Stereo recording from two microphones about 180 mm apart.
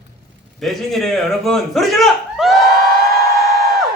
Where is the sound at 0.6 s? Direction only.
Centre (ahead or behind).